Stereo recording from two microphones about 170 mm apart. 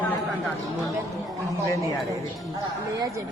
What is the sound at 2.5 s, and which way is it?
Speech, 20° right (ahead or behind).